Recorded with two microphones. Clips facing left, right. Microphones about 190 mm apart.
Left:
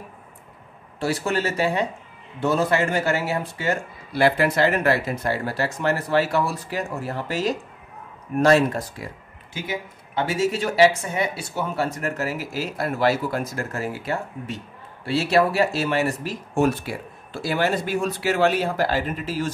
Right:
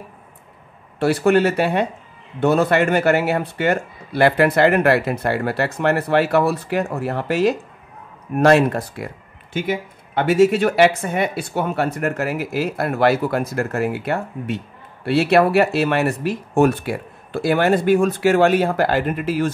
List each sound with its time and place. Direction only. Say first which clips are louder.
0.9 s speech: right 8 dB; 60° right (ahead or behind)